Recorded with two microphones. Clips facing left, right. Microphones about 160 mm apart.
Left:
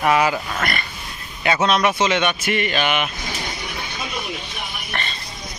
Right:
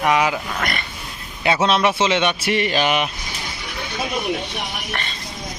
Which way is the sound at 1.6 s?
30° right (ahead or behind).